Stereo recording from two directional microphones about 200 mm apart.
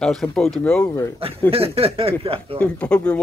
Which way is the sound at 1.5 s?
30° right (ahead or behind).